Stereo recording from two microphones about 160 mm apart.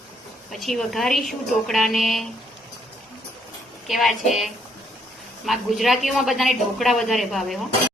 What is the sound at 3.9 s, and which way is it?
Speech, centre (ahead or behind).